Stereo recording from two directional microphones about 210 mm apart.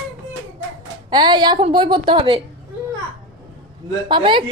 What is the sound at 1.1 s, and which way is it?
A woman's voice, 20° right (ahead or behind).